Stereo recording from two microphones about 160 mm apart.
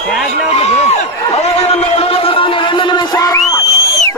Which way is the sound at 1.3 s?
40° left (ahead or behind).